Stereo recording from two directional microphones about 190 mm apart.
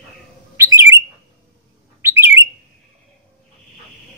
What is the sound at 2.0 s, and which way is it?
Bird, 10° right (ahead or behind).